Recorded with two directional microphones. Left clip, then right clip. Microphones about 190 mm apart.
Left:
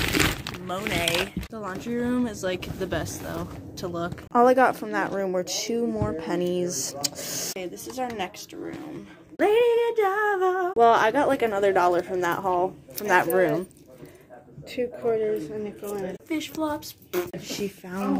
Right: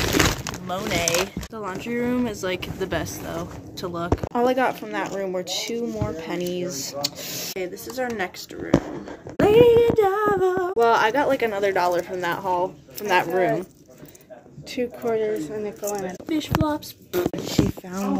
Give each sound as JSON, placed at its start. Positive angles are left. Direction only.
{"t": 0.7, "sound": "female singing", "side_deg": 0}
{"t": 3.3, "sound": "speech", "side_deg": 10}
{"t": 7.5, "sound": "female singing", "side_deg": -5}
{"t": 9.4, "sound": "female singing", "side_deg": 0}
{"t": 14.7, "sound": "speech", "side_deg": -45}
{"t": 16.3, "sound": "a woman's voice", "side_deg": 10}